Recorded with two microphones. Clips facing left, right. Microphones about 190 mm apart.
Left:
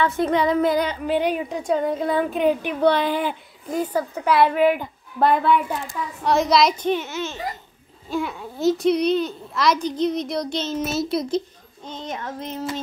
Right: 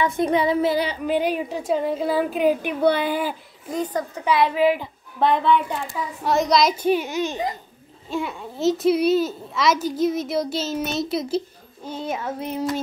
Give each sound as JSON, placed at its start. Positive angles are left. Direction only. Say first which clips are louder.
{"t": 0.0, "sound": "speech", "louder": "even", "side_deg": -15}
{"t": 3.7, "sound": "a woman's voice", "louder": "left 2 dB", "side_deg": 5}
{"t": 6.8, "sound": "speech", "louder": "right 3 dB", "side_deg": -10}
{"t": 8.1, "sound": "a child's voice", "louder": "left 1 dB", "side_deg": 0}